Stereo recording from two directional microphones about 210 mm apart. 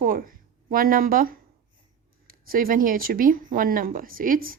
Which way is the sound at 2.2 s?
45° right (ahead or behind).